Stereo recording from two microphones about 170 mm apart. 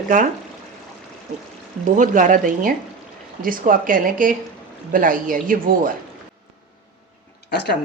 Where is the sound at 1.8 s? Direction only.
50° right (ahead or behind).